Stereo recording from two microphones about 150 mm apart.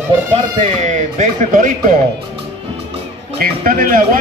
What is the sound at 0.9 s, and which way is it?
Speech, 55° right (ahead or behind).